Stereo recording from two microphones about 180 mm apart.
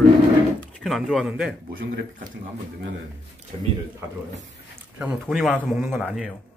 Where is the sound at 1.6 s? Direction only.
55° right (ahead or behind).